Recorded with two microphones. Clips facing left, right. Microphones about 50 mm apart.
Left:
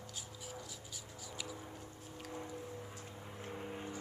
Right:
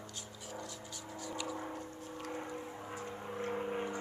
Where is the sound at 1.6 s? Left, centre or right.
Right.